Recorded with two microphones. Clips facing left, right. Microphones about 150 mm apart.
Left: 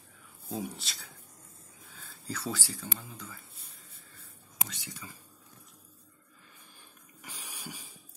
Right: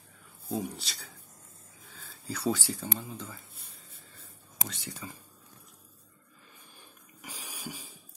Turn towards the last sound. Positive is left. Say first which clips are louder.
# right 3 dB
turn(degrees=-10)  # may be behind; listen again after turning